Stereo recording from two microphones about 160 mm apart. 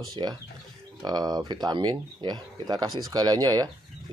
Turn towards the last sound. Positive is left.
turn(degrees=-25)  # may be behind; listen again after turning